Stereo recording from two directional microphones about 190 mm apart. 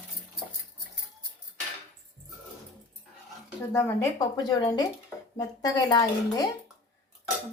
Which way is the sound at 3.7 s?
20° left (ahead or behind).